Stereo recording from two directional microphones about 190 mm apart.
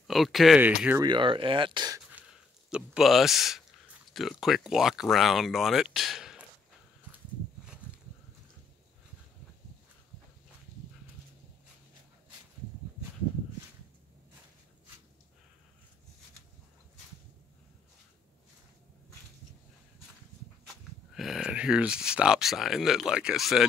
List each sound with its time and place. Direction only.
0.0 s speech: centre (ahead or behind)
1.0 s speech: 25° right (ahead or behind)
2.7 s speech: 5° right (ahead or behind)
20.6 s speech: centre (ahead or behind)